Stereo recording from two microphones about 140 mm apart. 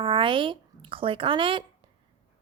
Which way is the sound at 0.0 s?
40° right (ahead or behind).